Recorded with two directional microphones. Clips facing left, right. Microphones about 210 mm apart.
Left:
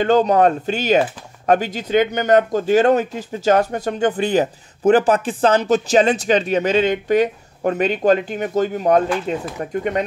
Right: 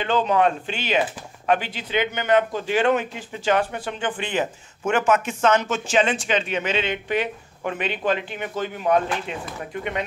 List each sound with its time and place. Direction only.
0.0 s speech: 40° left (ahead or behind)